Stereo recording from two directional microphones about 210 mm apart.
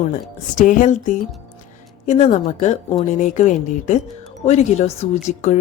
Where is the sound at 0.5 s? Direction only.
40° left (ahead or behind).